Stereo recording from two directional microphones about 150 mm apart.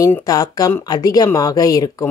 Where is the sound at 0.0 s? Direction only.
20° left (ahead or behind).